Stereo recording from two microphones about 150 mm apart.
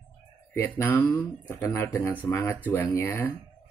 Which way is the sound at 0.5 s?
15° left (ahead or behind).